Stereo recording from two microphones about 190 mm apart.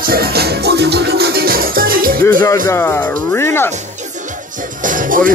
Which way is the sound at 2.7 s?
10° left (ahead or behind).